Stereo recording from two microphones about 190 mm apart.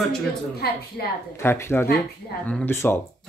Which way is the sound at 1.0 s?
55° left (ahead or behind).